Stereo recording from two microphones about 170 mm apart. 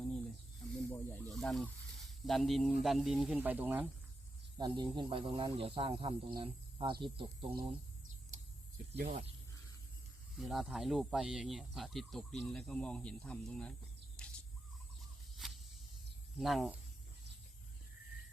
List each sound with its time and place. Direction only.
0.9 s speech: 10° left (ahead or behind); by 3.8 s 10° right (ahead or behind)
4.5 s speech: 25° right (ahead or behind)
10.4 s speech: centre (ahead or behind)
14.2 s a sound: 5° left (ahead or behind)
15.4 s walk: centre (ahead or behind)
16.4 s speech: centre (ahead or behind)